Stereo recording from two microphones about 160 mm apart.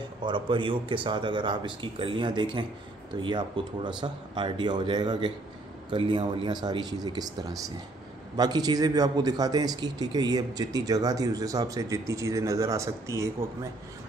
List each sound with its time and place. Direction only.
0.2 s speech: 30° right (ahead or behind)